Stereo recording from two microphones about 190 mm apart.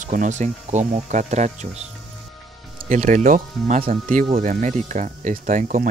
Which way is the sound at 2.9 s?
40° right (ahead or behind).